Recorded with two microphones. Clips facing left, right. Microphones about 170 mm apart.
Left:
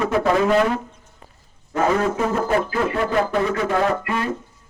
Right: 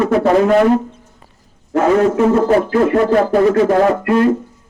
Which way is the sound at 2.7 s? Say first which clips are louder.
Right 9 dB; 45° right (ahead or behind).